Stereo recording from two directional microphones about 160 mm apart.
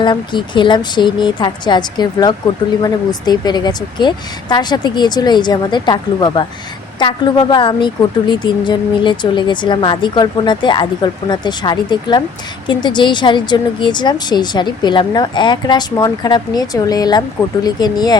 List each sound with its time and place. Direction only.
0.0 s speech: 30° left (ahead or behind)